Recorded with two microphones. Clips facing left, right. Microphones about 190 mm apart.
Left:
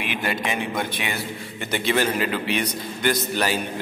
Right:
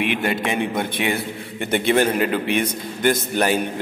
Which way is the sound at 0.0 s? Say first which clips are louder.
Right 5 dB; 60° right (ahead or behind).